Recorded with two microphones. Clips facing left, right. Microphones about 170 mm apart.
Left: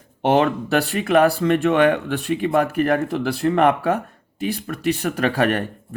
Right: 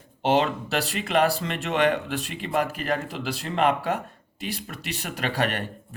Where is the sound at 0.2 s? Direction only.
60° left (ahead or behind).